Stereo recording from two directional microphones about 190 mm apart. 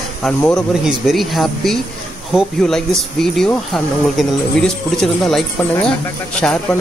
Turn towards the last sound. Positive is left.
turn(degrees=5)  # may be behind; listen again after turning